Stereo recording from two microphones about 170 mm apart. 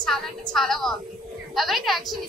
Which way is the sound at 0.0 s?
Centre (ahead or behind).